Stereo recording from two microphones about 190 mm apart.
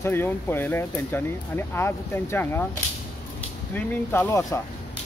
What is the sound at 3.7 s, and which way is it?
Speech, 10° left (ahead or behind).